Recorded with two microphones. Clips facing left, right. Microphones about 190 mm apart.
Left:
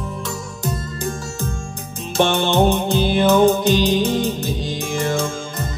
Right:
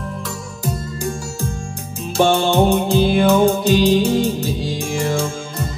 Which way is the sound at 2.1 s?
Centre (ahead or behind).